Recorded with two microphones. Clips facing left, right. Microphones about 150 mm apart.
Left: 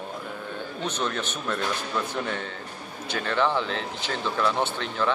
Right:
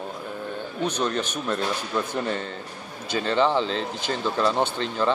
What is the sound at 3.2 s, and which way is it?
Speech, 20° right (ahead or behind).